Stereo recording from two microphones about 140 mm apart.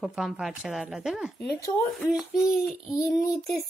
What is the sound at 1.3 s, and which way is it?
Speech, 10° left (ahead or behind).